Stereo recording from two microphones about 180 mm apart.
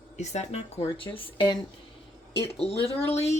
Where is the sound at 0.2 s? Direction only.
35° left (ahead or behind).